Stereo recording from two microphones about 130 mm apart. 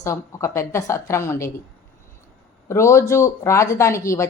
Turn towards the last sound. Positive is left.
turn(degrees=25)  # may be behind; listen again after turning